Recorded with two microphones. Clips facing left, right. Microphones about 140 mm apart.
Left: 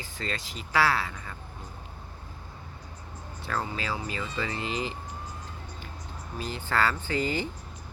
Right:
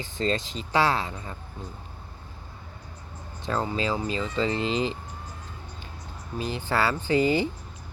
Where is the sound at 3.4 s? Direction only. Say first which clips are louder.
Right 5 dB; 20° right (ahead or behind).